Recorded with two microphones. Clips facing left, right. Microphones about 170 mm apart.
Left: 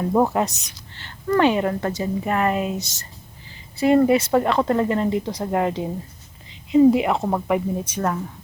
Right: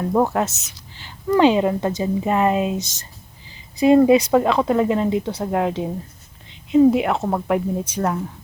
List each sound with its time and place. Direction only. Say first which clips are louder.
0.0 s a woman's voice: even; 5° left (ahead or behind)